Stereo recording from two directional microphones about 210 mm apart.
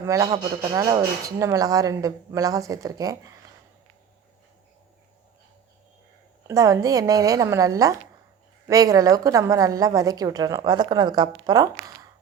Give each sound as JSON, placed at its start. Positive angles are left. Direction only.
{"t": 0.0, "sound": "a woman's voice", "side_deg": -15}
{"t": 6.5, "sound": "a woman's voice", "side_deg": -15}